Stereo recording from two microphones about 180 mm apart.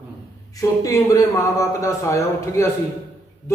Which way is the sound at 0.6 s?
20° left (ahead or behind).